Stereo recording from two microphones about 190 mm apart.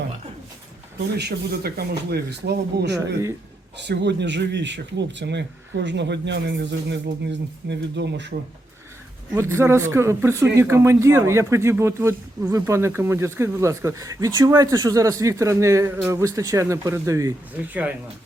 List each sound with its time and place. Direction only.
1.1 s speech: 55° right (ahead or behind)
9.3 s speech: 15° right (ahead or behind)